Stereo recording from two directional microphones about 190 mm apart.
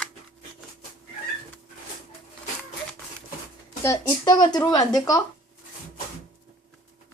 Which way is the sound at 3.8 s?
20° left (ahead or behind).